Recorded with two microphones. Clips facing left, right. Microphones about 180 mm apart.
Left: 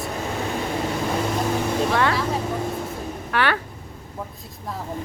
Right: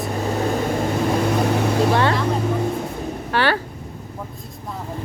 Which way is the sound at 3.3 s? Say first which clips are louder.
Right 3 dB; 30° right (ahead or behind).